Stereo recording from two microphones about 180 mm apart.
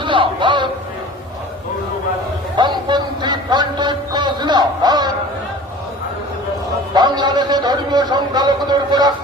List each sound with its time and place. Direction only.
0.0 s a man's voice: 25° right (ahead or behind)
2.6 s a sound: 25° right (ahead or behind)
6.9 s a man's voice: 25° right (ahead or behind)